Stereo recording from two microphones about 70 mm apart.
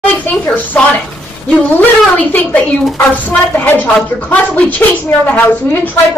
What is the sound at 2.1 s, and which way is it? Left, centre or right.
A woman's voice, left.